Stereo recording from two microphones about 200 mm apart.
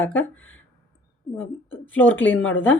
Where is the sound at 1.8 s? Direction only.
10° left (ahead or behind).